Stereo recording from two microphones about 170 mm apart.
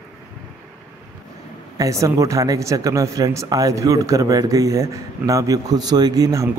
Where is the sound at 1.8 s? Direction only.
20° right (ahead or behind).